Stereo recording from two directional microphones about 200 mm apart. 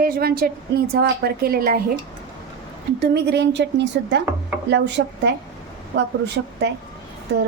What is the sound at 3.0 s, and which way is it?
Speech, 55° right (ahead or behind).